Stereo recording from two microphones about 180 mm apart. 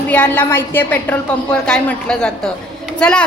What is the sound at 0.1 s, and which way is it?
A woman's voice, 10° left (ahead or behind).